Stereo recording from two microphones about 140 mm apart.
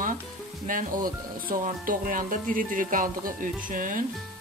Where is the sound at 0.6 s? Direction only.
75° right (ahead or behind).